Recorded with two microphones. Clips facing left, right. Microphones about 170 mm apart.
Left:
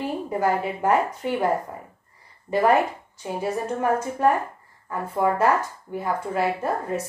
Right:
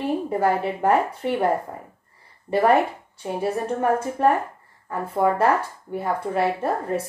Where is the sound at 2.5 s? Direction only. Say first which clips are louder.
Right 1 dB; 30° right (ahead or behind).